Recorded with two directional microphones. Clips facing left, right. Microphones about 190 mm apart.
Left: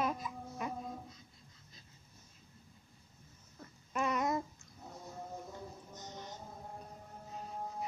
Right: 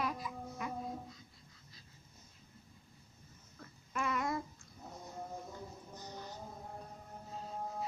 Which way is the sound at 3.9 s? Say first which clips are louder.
Left 3 dB; 20° left (ahead or behind).